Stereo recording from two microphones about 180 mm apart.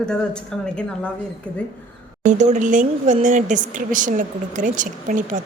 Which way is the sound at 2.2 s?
40° right (ahead or behind).